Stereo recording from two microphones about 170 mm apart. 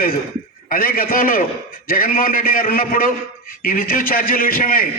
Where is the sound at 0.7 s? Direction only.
60° left (ahead or behind).